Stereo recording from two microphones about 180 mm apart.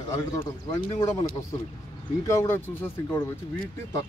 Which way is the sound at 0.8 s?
25° left (ahead or behind).